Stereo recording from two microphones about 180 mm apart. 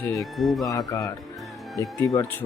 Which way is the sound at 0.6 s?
20° left (ahead or behind).